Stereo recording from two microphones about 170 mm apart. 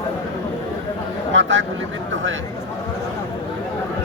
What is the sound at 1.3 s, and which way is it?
Speech, 90° right.